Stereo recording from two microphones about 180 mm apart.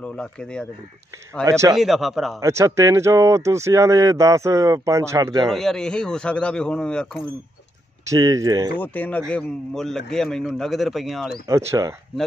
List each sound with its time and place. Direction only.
0.0 s a man's voice: 5° left (ahead or behind)
1.4 s speech: 20° right (ahead or behind)
1.8 s a man's voice: centre (ahead or behind)
2.4 s speech: 15° right (ahead or behind)
5.5 s a man's voice: centre (ahead or behind)
8.1 s speech: 20° right (ahead or behind)
8.7 s a man's voice: 10° left (ahead or behind)
11.4 s speech: 15° right (ahead or behind)